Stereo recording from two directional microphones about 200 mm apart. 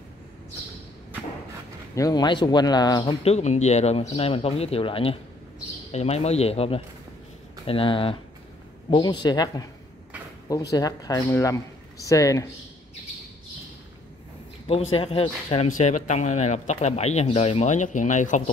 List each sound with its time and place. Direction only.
2.0 s speech: 20° left (ahead or behind)
10.7 s a man's voice: 20° left (ahead or behind)
14.9 s speech: 30° left (ahead or behind)